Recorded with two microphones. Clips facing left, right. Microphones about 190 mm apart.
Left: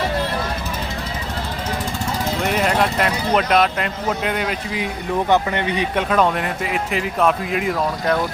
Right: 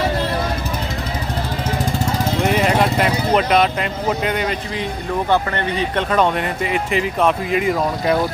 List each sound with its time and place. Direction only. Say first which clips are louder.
2.5 s speech: right 2 dB; centre (ahead or behind)
5.3 s speech: left 1 dB; 15° left (ahead or behind)
6.1 s speech: right 1 dB; centre (ahead or behind)